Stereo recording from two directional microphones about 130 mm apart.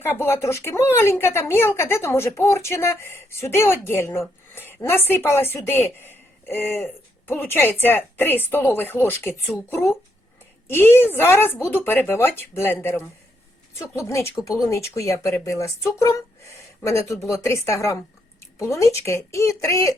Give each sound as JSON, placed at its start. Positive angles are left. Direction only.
{"t": 0.0, "sound": "speech", "side_deg": 15}